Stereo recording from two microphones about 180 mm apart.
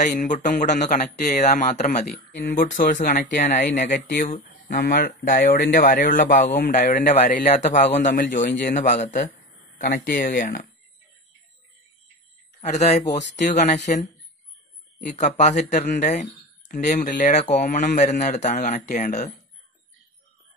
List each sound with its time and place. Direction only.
0.0 s speech: 45° left (ahead or behind)
12.5 s speech: 40° left (ahead or behind)
15.0 s speech: 40° left (ahead or behind)